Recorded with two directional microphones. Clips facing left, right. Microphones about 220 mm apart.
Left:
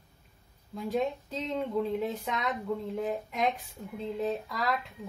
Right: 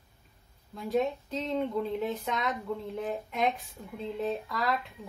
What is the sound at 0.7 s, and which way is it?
Speech, centre (ahead or behind).